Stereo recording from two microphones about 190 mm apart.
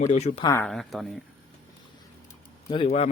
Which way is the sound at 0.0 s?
35° left (ahead or behind).